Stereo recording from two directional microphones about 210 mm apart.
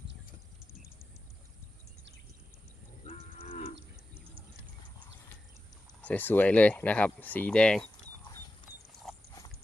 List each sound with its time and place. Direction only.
3.0 s cattle: 30° left (ahead or behind)
6.0 s speech: 5° left (ahead or behind)